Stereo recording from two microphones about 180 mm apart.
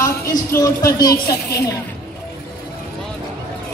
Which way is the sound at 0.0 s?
20° left (ahead or behind).